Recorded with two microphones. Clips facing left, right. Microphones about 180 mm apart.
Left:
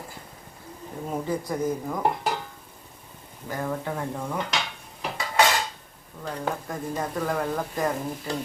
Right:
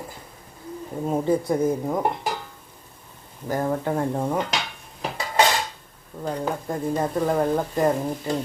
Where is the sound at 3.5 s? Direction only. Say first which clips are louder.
Right 6 dB; 40° right (ahead or behind).